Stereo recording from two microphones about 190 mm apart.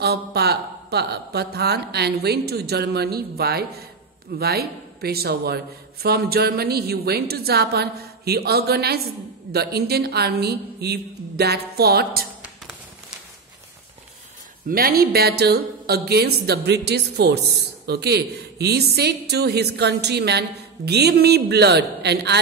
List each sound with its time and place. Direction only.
0.0 s speech: 60° right (ahead or behind)
14.7 s speech: 50° right (ahead or behind)